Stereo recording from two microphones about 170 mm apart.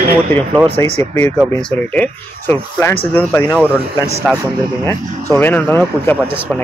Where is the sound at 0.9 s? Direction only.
40° right (ahead or behind).